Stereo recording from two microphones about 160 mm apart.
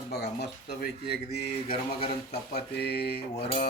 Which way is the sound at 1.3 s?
35° left (ahead or behind).